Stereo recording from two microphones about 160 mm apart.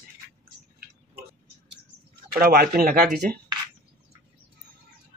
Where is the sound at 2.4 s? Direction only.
70° right (ahead or behind).